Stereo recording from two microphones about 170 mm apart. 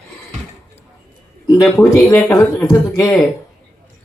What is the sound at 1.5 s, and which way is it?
A man's voice, 15° left (ahead or behind).